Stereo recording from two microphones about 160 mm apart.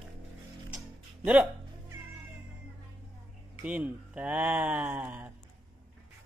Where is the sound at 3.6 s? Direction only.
10° right (ahead or behind).